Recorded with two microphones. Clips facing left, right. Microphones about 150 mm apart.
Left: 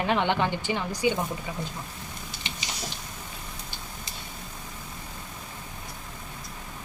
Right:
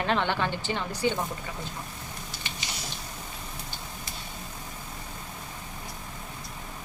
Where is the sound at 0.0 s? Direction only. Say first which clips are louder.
Left 2 dB; 15° left (ahead or behind).